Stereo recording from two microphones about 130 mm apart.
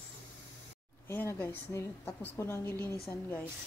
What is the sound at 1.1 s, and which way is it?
A woman's voice, 15° left (ahead or behind).